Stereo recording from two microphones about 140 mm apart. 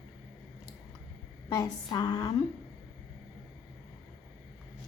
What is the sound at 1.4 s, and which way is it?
Speech, 25° left (ahead or behind).